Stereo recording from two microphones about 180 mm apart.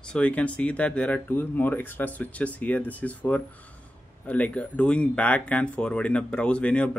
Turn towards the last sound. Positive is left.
turn(degrees=5)  # may be behind; listen again after turning